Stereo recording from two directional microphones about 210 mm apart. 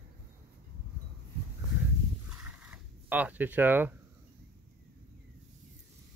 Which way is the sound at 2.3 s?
5° right (ahead or behind).